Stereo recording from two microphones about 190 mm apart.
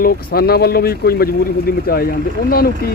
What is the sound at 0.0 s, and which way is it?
Speech, 50° left (ahead or behind).